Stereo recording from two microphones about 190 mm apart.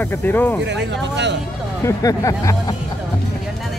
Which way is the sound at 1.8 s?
15° left (ahead or behind).